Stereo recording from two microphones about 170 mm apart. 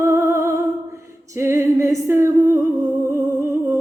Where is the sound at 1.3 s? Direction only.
15° right (ahead or behind).